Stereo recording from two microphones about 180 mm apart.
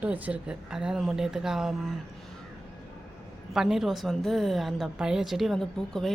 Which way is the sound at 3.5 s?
Centre (ahead or behind).